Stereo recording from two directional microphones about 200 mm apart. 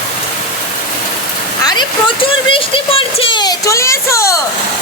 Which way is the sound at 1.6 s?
20° left (ahead or behind).